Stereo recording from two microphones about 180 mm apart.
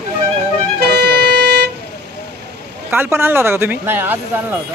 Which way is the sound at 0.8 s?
65° right (ahead or behind).